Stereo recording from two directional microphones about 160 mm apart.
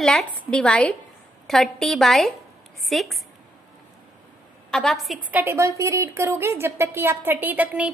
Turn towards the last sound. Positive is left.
turn(degrees=-10)  # may be behind; listen again after turning